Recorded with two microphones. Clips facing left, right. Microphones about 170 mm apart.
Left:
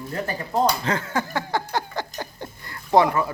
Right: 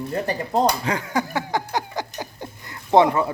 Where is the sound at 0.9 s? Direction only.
15° right (ahead or behind).